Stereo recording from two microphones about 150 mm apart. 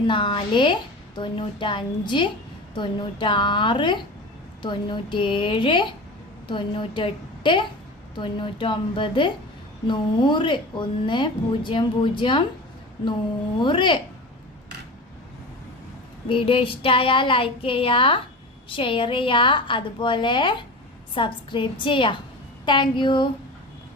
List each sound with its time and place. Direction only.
0.1 s speech: 35° left (ahead or behind)
13.6 s speech: 30° left (ahead or behind)
16.3 s speech: 35° left (ahead or behind)